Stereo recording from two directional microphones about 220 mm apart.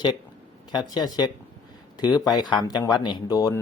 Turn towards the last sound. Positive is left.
turn(degrees=15)  # may be behind; listen again after turning